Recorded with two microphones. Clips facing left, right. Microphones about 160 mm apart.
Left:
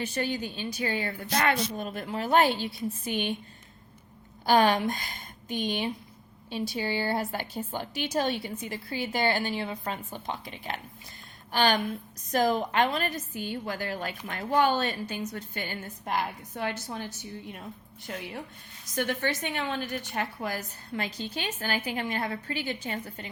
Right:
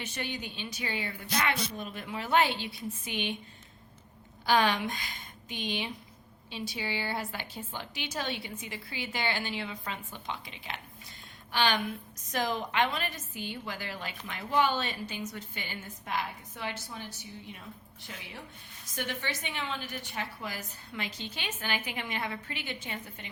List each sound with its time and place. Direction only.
0.0 s a woman's voice: 40° left (ahead or behind)
4.4 s a woman's voice: 45° left (ahead or behind)